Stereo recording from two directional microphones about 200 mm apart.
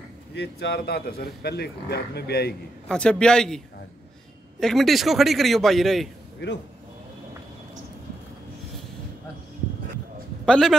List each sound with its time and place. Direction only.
0.3 s a man's voice: 55° left (ahead or behind)
2.9 s a man's voice: 5° left (ahead or behind)
6.4 s speech: 55° left (ahead or behind)
10.4 s a man's voice: 5° left (ahead or behind)